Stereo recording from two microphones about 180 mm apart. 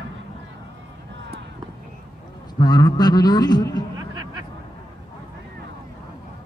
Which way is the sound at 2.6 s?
20° left (ahead or behind).